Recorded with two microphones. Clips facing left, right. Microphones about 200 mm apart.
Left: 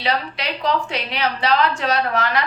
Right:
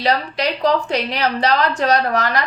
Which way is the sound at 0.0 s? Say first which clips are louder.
Right 5 dB; 40° right (ahead or behind).